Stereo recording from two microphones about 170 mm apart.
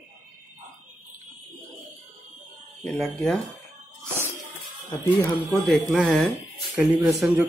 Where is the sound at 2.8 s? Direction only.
Centre (ahead or behind).